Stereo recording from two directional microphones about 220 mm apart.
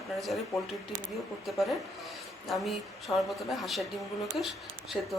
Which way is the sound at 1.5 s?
Centre (ahead or behind).